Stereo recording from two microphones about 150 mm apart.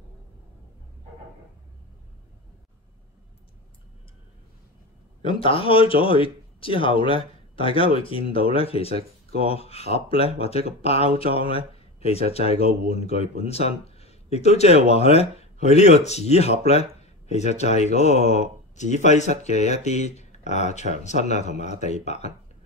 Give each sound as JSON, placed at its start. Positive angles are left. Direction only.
{"t": 5.2, "sound": "a man's voice", "side_deg": 35}